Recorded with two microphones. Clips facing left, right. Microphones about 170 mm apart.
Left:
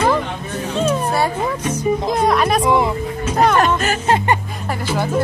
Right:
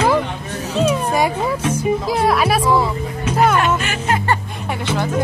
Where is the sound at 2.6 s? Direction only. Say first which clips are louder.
Left 1 dB; 20° left (ahead or behind).